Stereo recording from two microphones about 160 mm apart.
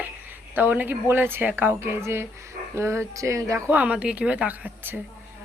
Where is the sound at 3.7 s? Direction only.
5° right (ahead or behind).